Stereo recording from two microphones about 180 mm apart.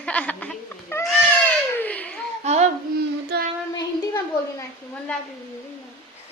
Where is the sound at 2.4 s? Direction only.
40° right (ahead or behind).